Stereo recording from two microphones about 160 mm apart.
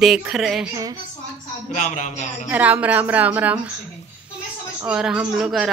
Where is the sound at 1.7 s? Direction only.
50° left (ahead or behind).